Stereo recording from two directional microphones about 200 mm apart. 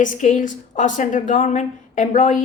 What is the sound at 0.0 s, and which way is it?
A woman's voice, 40° left (ahead or behind).